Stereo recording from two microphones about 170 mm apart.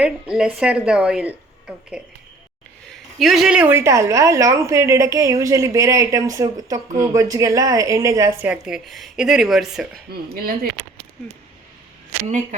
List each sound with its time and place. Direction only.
0.0 s a woman's voice: 5° right (ahead or behind)
10.1 s speech: 60° right (ahead or behind)